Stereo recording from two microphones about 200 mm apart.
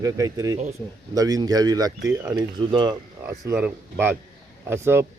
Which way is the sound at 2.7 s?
20° right (ahead or behind).